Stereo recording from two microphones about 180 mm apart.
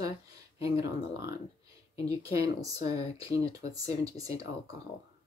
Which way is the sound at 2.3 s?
20° right (ahead or behind).